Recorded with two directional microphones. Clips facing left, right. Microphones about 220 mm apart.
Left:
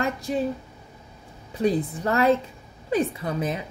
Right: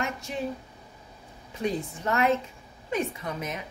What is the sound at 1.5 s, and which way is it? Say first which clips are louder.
A woman's voice: left 7 dB; 35° left (ahead or behind).